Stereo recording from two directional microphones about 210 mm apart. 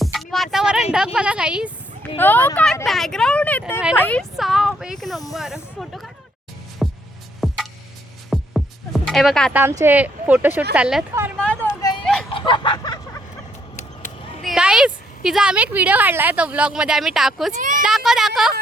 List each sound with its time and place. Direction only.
0.0 s a sound: centre (ahead or behind)
2.1 s a woman's voice: 10° left (ahead or behind)
6.8 s hum: centre (ahead or behind)
7.4 s music: centre (ahead or behind)
9.5 s a woman's voice: 10° right (ahead or behind)
11.3 s vehicle: 5° left (ahead or behind)
11.8 s a sound: 20° left (ahead or behind)
12.3 s fowl: 25° left (ahead or behind)
13.7 s a sound: 35° left (ahead or behind)
14.4 s a woman's voice: 5° right (ahead or behind)
17.5 s a child's voice: 40° right (ahead or behind)
17.8 s a sound: centre (ahead or behind)